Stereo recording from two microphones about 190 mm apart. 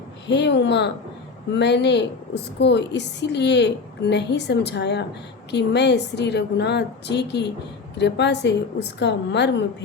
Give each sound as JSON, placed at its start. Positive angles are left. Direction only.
{"t": 0.3, "sound": "a woman's voice", "side_deg": 65}